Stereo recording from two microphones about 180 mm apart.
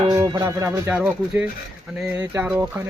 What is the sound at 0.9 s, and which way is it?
Speech, 5° right (ahead or behind).